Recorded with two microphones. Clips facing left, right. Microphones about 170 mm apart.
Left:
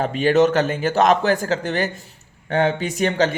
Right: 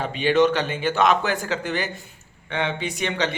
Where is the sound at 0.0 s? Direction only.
45° left (ahead or behind).